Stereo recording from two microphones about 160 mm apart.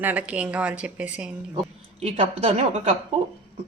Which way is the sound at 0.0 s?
10° right (ahead or behind).